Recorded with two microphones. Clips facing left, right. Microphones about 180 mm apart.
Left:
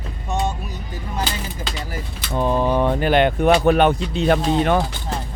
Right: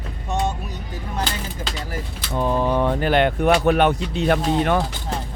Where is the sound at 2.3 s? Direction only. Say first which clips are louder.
Left 1 dB; 20° left (ahead or behind).